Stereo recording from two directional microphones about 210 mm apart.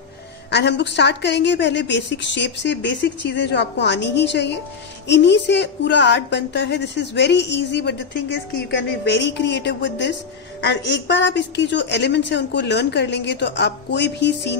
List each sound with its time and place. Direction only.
0.5 s a woman's voice: 55° left (ahead or behind)